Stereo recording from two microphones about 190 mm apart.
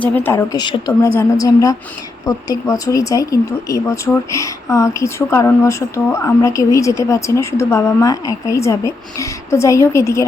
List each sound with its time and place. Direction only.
0.0 s speech: 10° left (ahead or behind)